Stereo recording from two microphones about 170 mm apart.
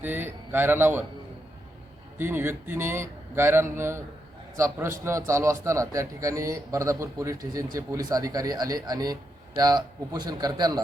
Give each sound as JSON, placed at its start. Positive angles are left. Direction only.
{"t": 0.0, "sound": "a man's voice", "side_deg": -10}
{"t": 2.1, "sound": "a man's voice", "side_deg": -15}